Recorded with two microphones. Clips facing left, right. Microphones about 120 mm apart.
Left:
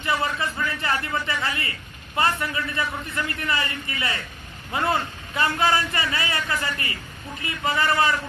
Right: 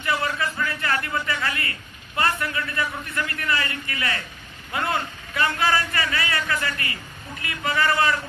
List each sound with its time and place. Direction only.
0.0 s a man's voice: 25° left (ahead or behind)